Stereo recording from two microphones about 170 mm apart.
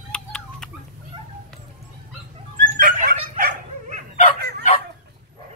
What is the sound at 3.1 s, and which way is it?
Dog, 50° right (ahead or behind).